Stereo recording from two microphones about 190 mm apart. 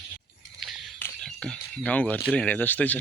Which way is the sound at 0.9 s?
5° left (ahead or behind).